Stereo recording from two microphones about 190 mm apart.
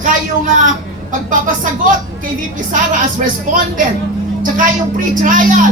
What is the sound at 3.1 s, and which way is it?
Speech, 45° right (ahead or behind).